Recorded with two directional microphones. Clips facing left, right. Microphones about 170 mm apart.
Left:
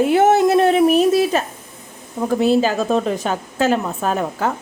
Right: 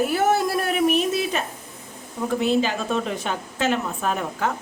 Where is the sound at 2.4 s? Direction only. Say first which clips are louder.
Left 6 dB; 40° left (ahead or behind).